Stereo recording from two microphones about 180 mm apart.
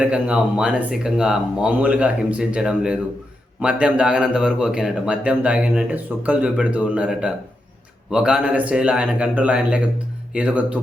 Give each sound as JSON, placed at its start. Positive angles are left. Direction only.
{"t": 0.0, "sound": "a man's voice", "side_deg": -5}